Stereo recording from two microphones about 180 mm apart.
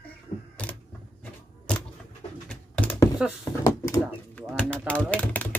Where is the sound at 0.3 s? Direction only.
30° left (ahead or behind).